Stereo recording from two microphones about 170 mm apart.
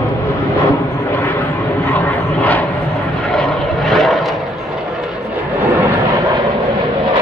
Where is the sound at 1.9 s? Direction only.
10° left (ahead or behind).